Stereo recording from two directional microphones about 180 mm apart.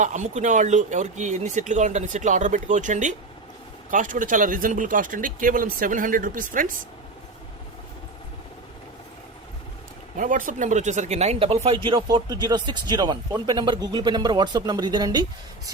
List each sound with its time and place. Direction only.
0.0 s speech: 45° right (ahead or behind)
10.2 s speech: 45° right (ahead or behind); by 15.7 s 20° right (ahead or behind)